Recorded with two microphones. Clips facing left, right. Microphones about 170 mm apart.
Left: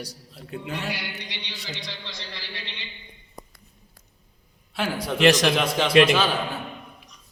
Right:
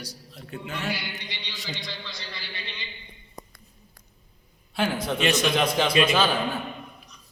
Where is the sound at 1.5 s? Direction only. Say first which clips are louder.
Right 2 dB; centre (ahead or behind).